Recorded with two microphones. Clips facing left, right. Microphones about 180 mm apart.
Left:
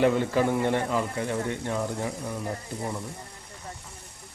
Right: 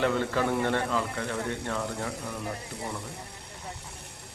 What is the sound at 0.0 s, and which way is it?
Speech, 15° left (ahead or behind).